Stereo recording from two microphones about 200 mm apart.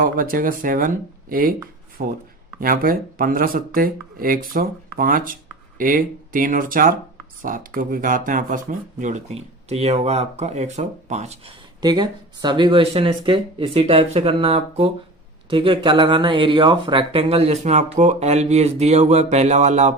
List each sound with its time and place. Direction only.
0.0 s speech: 45° right (ahead or behind)
11.8 s speech: 20° right (ahead or behind)